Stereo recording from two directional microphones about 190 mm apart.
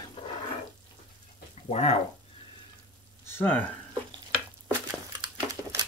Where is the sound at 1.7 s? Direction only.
30° left (ahead or behind).